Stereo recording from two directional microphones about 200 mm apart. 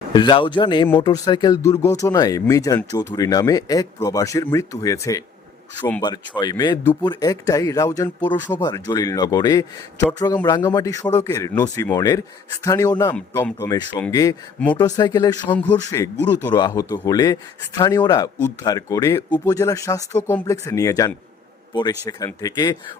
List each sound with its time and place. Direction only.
0.1 s speech: 25° left (ahead or behind)
6.4 s speech: 20° left (ahead or behind)
15.5 s a man's voice: 5° left (ahead or behind)